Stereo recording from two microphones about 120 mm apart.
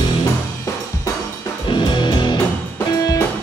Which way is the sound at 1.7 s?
40° left (ahead or behind).